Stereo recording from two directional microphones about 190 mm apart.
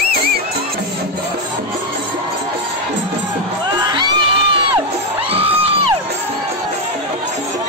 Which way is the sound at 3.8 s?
20° right (ahead or behind).